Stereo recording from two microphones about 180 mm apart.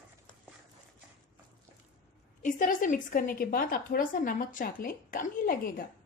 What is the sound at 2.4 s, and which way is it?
A woman's voice, 45° left (ahead or behind).